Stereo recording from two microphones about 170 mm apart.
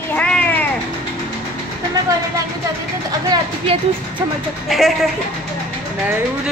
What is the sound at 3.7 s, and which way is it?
Speech, 35° right (ahead or behind).